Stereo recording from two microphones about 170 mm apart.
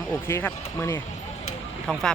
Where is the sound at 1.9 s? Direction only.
Centre (ahead or behind).